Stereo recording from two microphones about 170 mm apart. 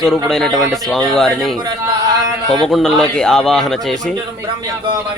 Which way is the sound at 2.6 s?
5° left (ahead or behind).